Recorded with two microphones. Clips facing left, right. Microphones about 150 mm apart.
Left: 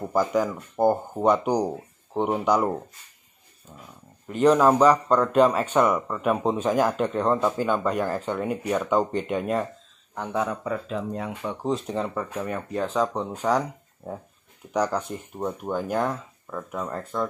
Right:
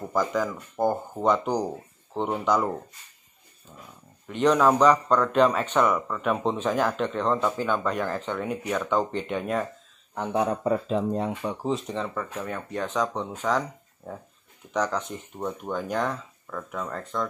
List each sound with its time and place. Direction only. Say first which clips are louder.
0.0 s speech: left 3 dB; 10° left (ahead or behind)
4.3 s speech: left 2 dB; 5° left (ahead or behind)
10.1 s speech: right 2 dB; 20° right (ahead or behind)
10.5 s speech: right 4 dB; 35° right (ahead or behind)
11.5 s speech: left 2 dB; centre (ahead or behind)